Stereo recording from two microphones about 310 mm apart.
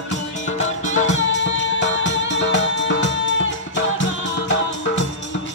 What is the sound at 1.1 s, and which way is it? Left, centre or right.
Music, left.